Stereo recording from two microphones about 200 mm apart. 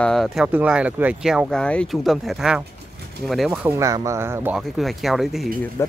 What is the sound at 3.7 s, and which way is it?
Speech, 15° right (ahead or behind).